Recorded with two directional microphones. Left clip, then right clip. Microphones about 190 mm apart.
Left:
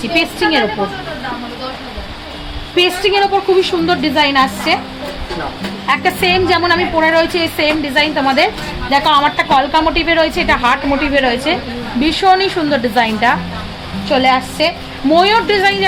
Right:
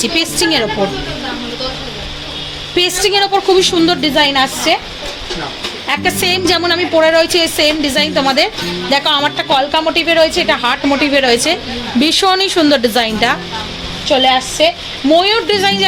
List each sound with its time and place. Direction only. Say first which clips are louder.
0.0 s a woman's voice: even; 45° right (ahead or behind)
2.7 s a woman's voice: even; 45° right (ahead or behind)
5.9 s a woman's voice: left 2 dB; 40° right (ahead or behind)